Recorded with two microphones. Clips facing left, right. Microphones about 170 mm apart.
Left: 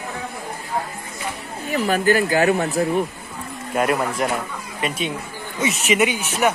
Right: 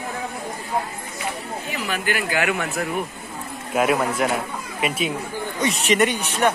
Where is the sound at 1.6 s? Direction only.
45° left (ahead or behind).